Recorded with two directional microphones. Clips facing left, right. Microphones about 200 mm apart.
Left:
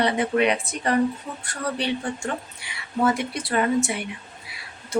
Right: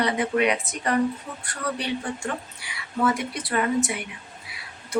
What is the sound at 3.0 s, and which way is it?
Speech, 25° left (ahead or behind).